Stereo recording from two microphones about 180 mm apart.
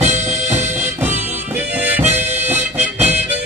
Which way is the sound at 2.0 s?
10° right (ahead or behind).